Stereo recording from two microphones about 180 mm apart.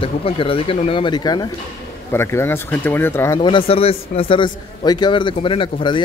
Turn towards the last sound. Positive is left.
turn(degrees=25)  # may be behind; listen again after turning